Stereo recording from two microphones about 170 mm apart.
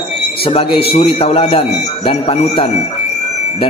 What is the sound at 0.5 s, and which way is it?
A man's voice, 35° left (ahead or behind).